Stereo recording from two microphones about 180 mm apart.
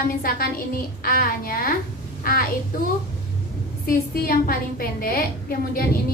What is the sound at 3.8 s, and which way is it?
A woman's voice, 55° left (ahead or behind).